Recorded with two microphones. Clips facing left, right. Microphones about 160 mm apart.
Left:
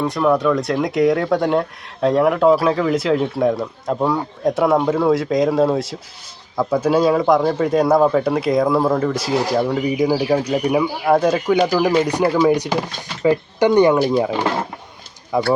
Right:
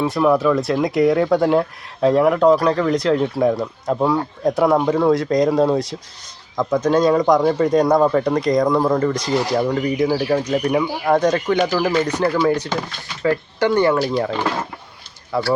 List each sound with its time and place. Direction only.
0.0 s speech: 5° right (ahead or behind); by 15.5 s 15° left (ahead or behind)